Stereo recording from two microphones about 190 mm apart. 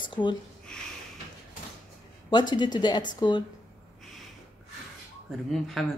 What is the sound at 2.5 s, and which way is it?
Speech, 25° left (ahead or behind).